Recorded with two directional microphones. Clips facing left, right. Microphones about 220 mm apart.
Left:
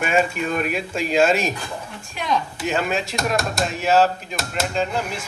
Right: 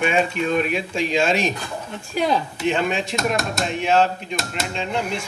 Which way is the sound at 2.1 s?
35° right (ahead or behind).